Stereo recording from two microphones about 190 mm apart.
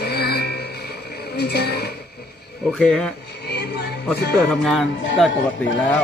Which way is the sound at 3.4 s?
60° left (ahead or behind).